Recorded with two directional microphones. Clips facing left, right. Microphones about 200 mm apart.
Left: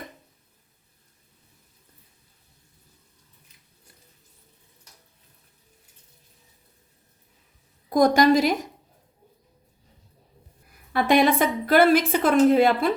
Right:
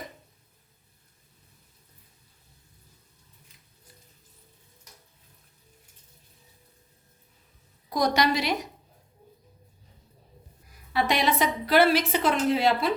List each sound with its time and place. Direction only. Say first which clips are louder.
7.9 s a woman's voice: left 7 dB; 50° left (ahead or behind)
10.9 s a woman's voice: left 6 dB; 55° left (ahead or behind)